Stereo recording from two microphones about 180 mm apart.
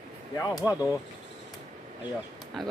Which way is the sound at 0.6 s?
20° left (ahead or behind).